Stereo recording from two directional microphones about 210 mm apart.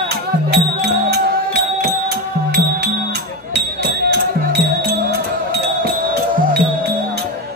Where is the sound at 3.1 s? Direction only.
50° right (ahead or behind).